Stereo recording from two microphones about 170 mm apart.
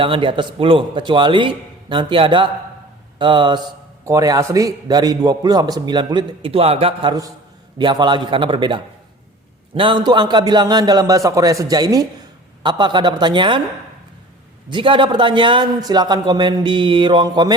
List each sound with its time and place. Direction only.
0.0 s a man's voice: 30° right (ahead or behind)
14.7 s a man's voice: 30° right (ahead or behind)